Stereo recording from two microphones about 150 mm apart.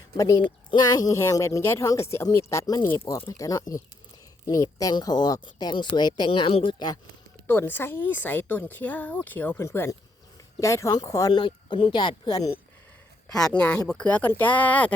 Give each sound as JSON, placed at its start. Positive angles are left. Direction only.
{"t": 0.2, "sound": "speech", "side_deg": 25}
{"t": 7.4, "sound": "speech", "side_deg": 15}
{"t": 13.3, "sound": "speech", "side_deg": 5}